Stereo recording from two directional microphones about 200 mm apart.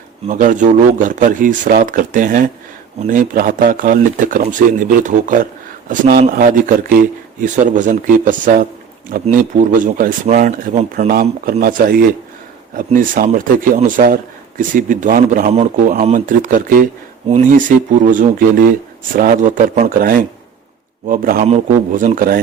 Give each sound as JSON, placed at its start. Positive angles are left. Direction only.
{"t": 0.3, "sound": "a man's voice", "side_deg": -40}